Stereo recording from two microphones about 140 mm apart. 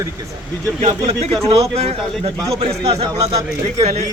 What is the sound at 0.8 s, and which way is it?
Speech, 50° right (ahead or behind).